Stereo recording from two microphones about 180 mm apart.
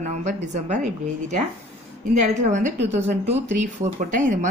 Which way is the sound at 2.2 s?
40° right (ahead or behind).